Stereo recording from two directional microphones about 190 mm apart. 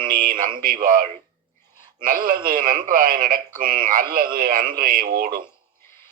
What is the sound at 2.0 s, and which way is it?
Speech, 50° right (ahead or behind).